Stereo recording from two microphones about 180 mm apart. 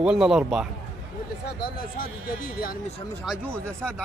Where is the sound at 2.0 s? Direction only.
55° left (ahead or behind).